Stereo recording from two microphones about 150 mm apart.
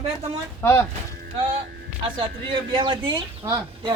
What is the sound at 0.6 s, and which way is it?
Speech, 15° left (ahead or behind).